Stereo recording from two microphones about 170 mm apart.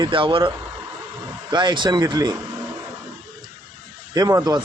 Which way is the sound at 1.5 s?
25° right (ahead or behind).